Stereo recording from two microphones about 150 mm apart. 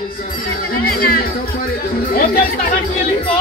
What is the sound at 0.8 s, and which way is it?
Music, 85° left.